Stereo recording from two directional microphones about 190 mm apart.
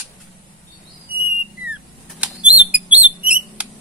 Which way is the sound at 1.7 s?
5° right (ahead or behind).